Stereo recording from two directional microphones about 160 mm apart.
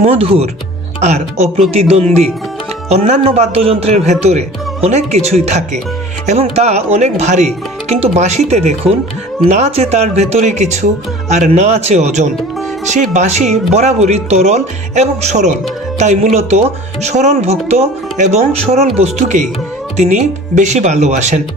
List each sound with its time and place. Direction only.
0.0 s speech: 40° right (ahead or behind)